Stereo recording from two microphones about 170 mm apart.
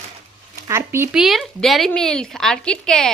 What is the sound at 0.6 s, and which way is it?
Speech, 15° right (ahead or behind).